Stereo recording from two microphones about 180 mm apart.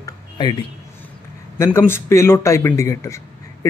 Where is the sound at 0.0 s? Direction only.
25° left (ahead or behind).